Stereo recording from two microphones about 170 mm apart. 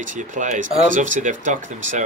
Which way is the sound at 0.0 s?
50° right (ahead or behind).